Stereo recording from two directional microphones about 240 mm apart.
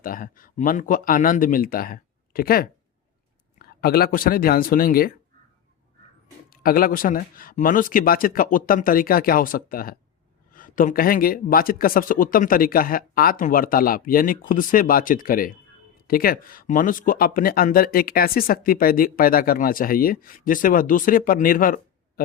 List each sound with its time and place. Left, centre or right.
0.0 s speech: left
3.8 s speech: left
6.5 s speech: left